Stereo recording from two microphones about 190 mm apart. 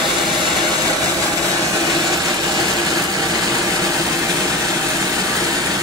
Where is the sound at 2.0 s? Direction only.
20° right (ahead or behind).